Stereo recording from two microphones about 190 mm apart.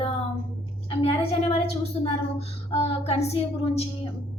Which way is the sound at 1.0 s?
30° left (ahead or behind).